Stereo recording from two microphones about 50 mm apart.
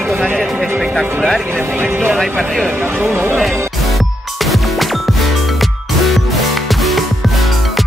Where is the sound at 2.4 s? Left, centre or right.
Centre.